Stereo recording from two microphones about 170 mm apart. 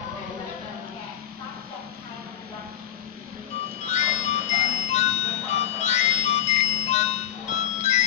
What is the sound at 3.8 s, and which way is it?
Music, 45° left (ahead or behind).